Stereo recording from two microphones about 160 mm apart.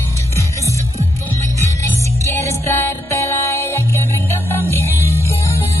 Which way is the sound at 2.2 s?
15° left (ahead or behind).